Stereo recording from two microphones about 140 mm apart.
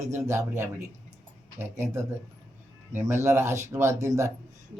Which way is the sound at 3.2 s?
20° right (ahead or behind).